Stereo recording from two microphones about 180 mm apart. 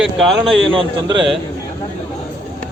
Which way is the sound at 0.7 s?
30° right (ahead or behind).